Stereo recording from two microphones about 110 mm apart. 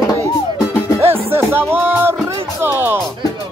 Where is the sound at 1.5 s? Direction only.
20° right (ahead or behind).